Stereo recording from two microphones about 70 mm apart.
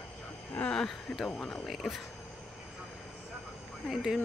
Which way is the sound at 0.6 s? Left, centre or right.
Centre.